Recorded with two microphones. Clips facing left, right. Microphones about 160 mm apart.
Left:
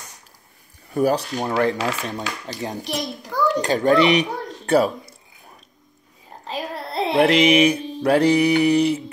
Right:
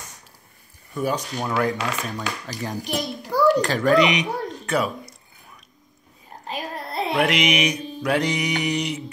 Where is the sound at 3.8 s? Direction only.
35° left (ahead or behind).